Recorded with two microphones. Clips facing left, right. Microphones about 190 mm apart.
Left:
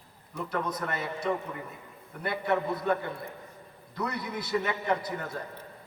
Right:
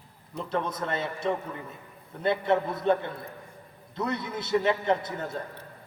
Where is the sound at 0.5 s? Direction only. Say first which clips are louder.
Right 3 dB; 25° right (ahead or behind).